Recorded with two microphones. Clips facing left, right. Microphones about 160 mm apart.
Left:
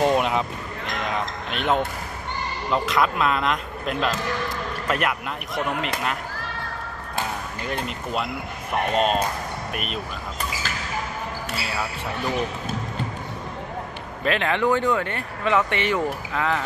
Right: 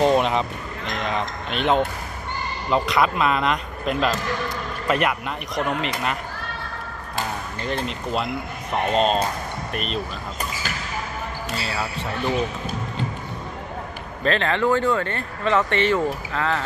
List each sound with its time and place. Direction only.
0.0 s speech: 5° left (ahead or behind)
7.6 s speech: 5° left (ahead or behind)
14.2 s speech: 10° left (ahead or behind)